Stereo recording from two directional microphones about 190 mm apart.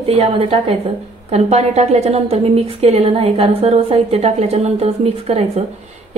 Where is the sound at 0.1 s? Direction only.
30° right (ahead or behind).